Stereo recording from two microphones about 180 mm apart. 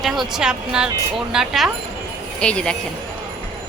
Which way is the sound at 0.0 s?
Centre (ahead or behind).